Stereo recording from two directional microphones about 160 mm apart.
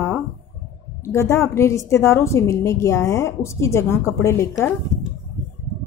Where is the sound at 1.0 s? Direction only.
15° left (ahead or behind).